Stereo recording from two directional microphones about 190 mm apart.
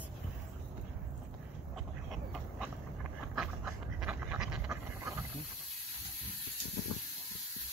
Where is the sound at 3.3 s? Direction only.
Centre (ahead or behind).